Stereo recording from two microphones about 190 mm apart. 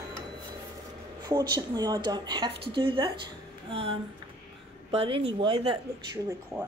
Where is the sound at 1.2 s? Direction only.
20° right (ahead or behind).